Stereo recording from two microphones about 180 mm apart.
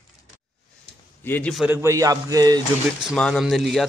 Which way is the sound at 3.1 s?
Centre (ahead or behind).